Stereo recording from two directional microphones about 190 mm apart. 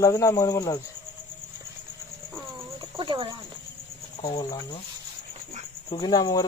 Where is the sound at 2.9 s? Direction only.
25° right (ahead or behind).